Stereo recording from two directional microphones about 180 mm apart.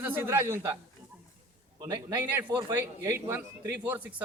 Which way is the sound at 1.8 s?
20° right (ahead or behind).